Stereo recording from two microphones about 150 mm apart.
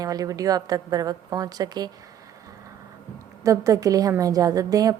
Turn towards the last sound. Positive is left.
turn(degrees=-25)  # may be behind; listen again after turning